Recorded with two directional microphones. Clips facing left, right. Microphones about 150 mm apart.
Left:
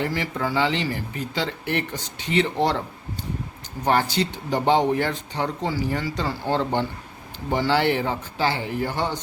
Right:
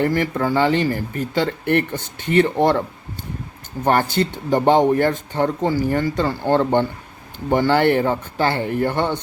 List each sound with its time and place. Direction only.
0.0 s speech: 50° right (ahead or behind)
3.8 s speech: 50° right (ahead or behind)